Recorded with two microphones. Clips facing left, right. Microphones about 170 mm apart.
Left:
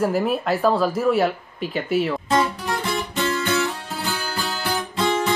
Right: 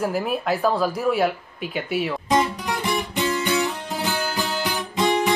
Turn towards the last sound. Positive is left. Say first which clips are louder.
# right 1 dB
turn(degrees=-15)  # may be behind; listen again after turning